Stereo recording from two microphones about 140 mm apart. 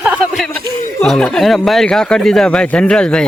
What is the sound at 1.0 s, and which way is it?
Speech, 5° left (ahead or behind).